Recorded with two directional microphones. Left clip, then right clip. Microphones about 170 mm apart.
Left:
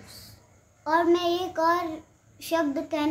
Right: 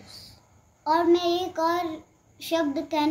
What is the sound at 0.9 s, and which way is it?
A child's voice, 15° left (ahead or behind).